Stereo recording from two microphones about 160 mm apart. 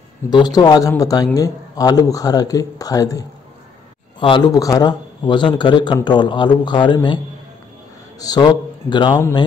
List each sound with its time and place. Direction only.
0.3 s a man's voice: 25° left (ahead or behind)
4.2 s speech: 35° left (ahead or behind)
4.5 s a man's voice: 20° left (ahead or behind)
8.2 s a man's voice: 25° left (ahead or behind)